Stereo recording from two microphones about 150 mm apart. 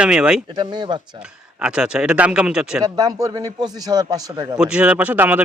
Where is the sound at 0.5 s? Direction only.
30° right (ahead or behind).